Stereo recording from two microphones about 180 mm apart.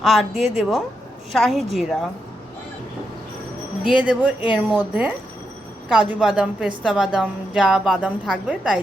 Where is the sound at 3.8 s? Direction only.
5° right (ahead or behind).